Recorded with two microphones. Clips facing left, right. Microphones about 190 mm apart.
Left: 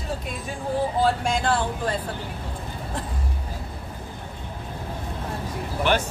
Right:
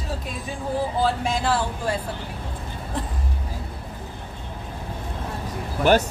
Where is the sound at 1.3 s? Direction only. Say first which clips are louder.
Even; 5° right (ahead or behind).